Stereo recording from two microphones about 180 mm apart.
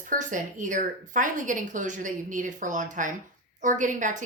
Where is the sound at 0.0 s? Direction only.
45° right (ahead or behind).